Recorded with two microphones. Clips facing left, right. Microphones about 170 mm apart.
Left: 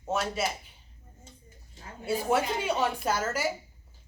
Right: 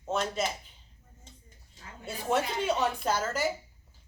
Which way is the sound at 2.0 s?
10° left (ahead or behind).